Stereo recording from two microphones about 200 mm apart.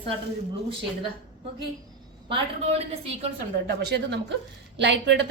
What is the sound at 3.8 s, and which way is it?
A woman's voice, 60° right (ahead or behind).